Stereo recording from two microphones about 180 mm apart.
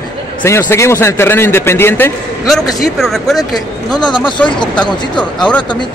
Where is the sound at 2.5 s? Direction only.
Centre (ahead or behind).